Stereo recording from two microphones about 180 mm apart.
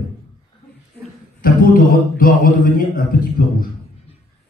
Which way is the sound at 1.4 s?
50° left (ahead or behind).